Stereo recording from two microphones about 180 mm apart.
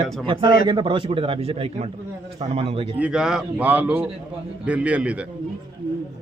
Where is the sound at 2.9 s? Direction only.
5° right (ahead or behind).